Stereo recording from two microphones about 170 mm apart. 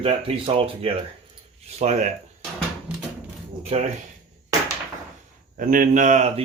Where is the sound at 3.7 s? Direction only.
40° right (ahead or behind).